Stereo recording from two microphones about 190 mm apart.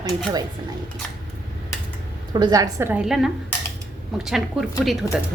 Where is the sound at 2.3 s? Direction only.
20° right (ahead or behind); by 4.9 s centre (ahead or behind).